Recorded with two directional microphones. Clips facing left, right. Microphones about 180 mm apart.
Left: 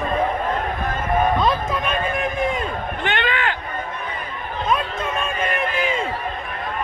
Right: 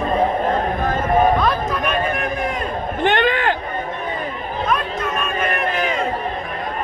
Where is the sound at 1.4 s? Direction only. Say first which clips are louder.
Right 1 dB; 25° left (ahead or behind).